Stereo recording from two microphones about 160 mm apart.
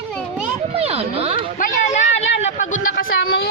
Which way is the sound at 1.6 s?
45° left (ahead or behind).